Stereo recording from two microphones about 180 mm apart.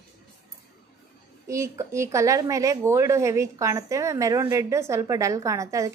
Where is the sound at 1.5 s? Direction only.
15° right (ahead or behind).